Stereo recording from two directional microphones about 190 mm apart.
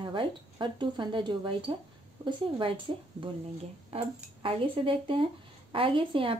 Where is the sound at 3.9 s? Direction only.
30° right (ahead or behind).